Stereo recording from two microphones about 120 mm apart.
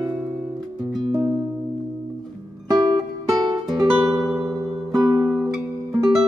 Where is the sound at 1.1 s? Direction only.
25° right (ahead or behind).